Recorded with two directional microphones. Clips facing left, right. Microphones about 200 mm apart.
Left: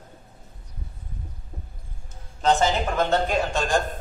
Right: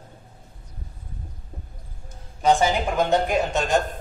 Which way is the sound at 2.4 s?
10° right (ahead or behind).